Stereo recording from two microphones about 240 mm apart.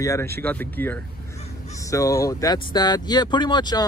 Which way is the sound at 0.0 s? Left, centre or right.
Centre.